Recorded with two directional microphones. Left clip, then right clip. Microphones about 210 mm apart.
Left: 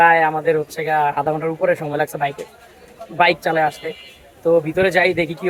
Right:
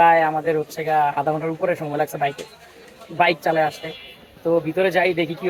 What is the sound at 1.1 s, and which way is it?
Speech, 10° left (ahead or behind).